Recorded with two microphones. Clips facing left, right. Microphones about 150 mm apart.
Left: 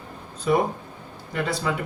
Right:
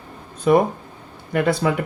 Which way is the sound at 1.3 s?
60° right (ahead or behind).